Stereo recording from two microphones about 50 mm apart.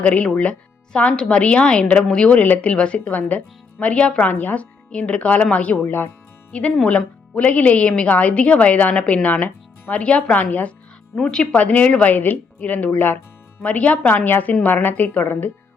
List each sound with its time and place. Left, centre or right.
0.0 s speech: left
4.3 s speech: left
4.6 s speech: left
5.8 s speech: left
6.5 s speech: left
10.3 s speech: left
11.2 s speech: centre
11.5 s speech: left
12.9 s speech: left
13.6 s speech: left
14.3 s speech: left